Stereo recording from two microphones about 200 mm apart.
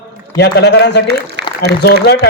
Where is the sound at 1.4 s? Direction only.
60° right (ahead or behind).